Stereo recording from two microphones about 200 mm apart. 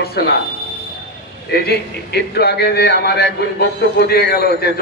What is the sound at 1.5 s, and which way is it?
A man's voice, 55° left (ahead or behind).